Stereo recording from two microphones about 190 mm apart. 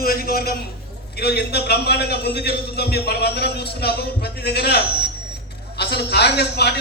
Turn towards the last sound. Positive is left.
turn(degrees=60)  # may be behind; listen again after turning